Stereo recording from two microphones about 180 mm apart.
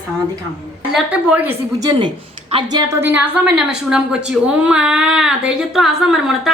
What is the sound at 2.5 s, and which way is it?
Speech, 20° right (ahead or behind).